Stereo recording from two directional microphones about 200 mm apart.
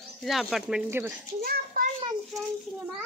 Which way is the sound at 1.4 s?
50° right (ahead or behind).